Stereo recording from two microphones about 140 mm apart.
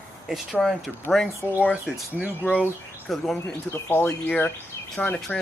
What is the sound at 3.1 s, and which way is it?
Speech, centre (ahead or behind).